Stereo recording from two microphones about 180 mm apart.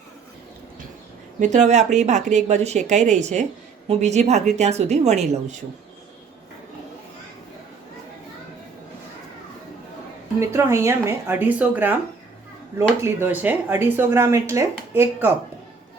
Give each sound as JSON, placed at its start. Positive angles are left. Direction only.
{"t": 1.4, "sound": "speech", "side_deg": -40}
{"t": 10.4, "sound": "speech", "side_deg": -15}
{"t": 13.0, "sound": "speech", "side_deg": -10}